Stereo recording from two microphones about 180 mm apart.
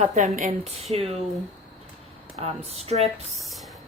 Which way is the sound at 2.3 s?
35° right (ahead or behind).